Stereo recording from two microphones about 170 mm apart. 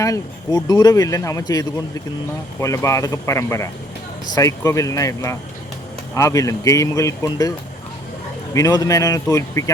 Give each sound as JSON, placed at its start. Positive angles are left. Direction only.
{"t": 0.0, "sound": "speech", "side_deg": 20}
{"t": 8.5, "sound": "speech", "side_deg": 20}